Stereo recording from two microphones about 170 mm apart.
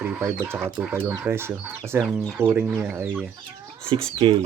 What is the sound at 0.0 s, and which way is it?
Speech, 15° right (ahead or behind).